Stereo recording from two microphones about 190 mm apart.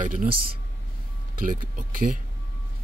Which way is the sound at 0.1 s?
45° right (ahead or behind).